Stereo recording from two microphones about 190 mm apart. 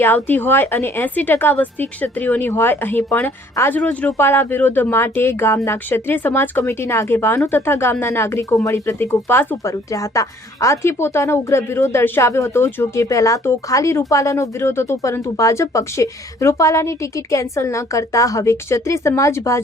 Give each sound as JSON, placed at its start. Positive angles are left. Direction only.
{"t": 0.0, "sound": "speech", "side_deg": 10}